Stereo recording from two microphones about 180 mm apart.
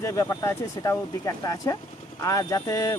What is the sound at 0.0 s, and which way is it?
Speech, 15° left (ahead or behind).